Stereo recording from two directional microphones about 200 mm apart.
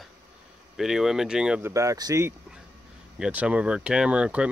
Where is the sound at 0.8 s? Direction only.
Centre (ahead or behind).